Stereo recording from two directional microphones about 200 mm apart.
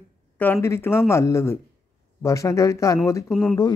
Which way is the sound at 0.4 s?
10° left (ahead or behind).